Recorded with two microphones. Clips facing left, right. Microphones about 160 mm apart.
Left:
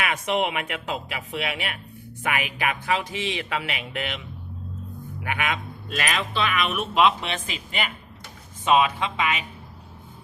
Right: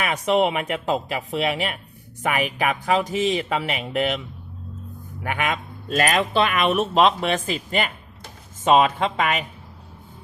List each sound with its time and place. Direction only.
0.0 s speech: 35° right (ahead or behind)
5.2 s speech: 45° right (ahead or behind)